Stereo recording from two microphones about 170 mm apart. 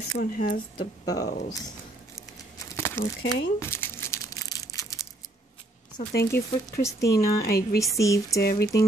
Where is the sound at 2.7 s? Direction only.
15° left (ahead or behind).